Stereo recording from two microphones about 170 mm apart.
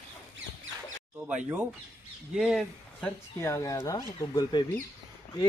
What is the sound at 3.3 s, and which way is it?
Speech, 15° left (ahead or behind).